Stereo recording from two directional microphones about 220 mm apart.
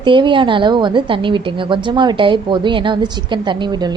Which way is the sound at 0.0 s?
20° right (ahead or behind).